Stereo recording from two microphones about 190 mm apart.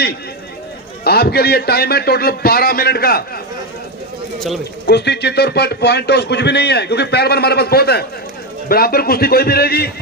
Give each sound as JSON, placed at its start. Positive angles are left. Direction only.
{"t": 1.0, "sound": "a man's voice", "side_deg": 55}
{"t": 4.8, "sound": "a man's voice", "side_deg": 65}